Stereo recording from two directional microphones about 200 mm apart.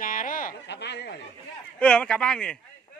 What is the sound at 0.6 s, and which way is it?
Speech, 55° left (ahead or behind).